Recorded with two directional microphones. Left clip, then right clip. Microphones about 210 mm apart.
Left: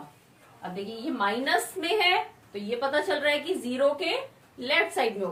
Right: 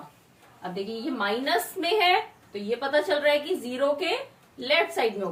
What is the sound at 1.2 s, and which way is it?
A woman's voice, 15° left (ahead or behind).